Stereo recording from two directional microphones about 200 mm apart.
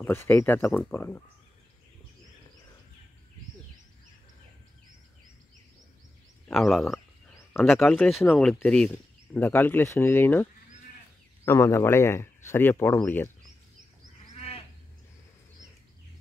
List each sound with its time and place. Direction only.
0.0 s speech: 10° left (ahead or behind)
6.7 s speech: centre (ahead or behind)
14.3 s sheep: 30° left (ahead or behind)